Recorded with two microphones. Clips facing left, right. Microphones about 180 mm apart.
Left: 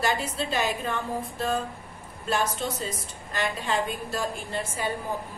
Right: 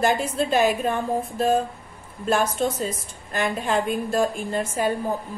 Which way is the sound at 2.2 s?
50° right (ahead or behind).